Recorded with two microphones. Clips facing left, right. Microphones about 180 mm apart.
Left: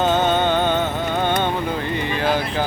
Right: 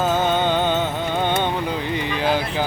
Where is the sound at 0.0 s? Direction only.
5° right (ahead or behind).